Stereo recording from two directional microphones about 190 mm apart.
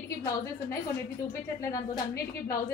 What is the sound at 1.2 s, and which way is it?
Speech, 15° left (ahead or behind).